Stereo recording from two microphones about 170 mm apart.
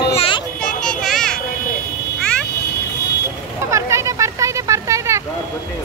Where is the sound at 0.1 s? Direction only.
35° left (ahead or behind).